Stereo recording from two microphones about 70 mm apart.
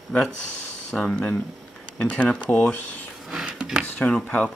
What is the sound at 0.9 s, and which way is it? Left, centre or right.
Speech, centre.